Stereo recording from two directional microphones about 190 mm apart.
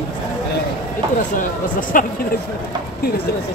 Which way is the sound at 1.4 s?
45° left (ahead or behind).